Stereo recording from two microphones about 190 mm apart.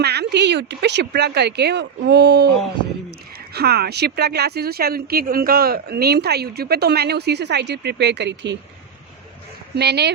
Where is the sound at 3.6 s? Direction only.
60° right (ahead or behind).